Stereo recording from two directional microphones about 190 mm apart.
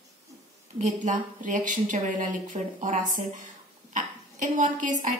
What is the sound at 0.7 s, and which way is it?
A woman's voice, 40° right (ahead or behind).